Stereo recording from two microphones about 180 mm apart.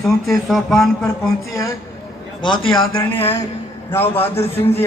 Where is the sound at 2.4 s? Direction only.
25° left (ahead or behind).